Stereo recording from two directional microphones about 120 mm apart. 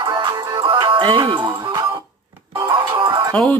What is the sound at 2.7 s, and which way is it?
Music, 45° right (ahead or behind).